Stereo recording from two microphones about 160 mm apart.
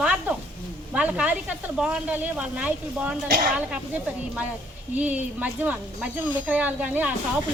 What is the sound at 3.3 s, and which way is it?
Speech, 65° right (ahead or behind).